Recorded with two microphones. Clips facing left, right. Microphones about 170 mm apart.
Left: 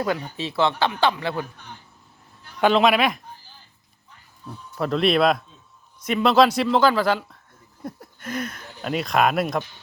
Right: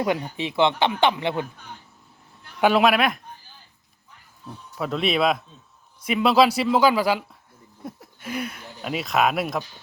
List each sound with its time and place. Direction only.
0.0 s speech: 15° right (ahead or behind)
2.6 s speech: 10° right (ahead or behind)
4.4 s speech: centre (ahead or behind)